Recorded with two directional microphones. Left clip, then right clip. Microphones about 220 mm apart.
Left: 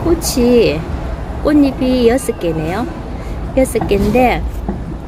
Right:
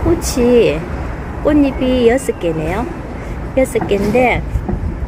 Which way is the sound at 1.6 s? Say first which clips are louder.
Even; 45° left (ahead or behind).